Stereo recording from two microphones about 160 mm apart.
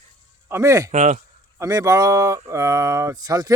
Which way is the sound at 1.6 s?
20° right (ahead or behind).